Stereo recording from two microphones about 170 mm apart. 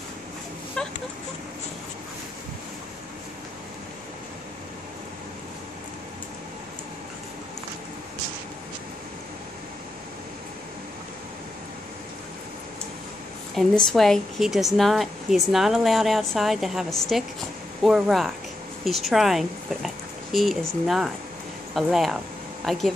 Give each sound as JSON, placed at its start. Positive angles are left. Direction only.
{"t": 0.8, "sound": "chicken", "side_deg": 5}
{"t": 13.6, "sound": "a woman's voice", "side_deg": 0}